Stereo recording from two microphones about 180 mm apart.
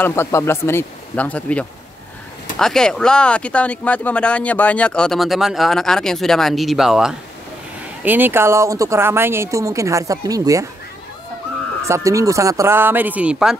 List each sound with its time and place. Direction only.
0.0 s speech: 15° left (ahead or behind); by 10.7 s 20° right (ahead or behind)
11.9 s speech: 15° right (ahead or behind)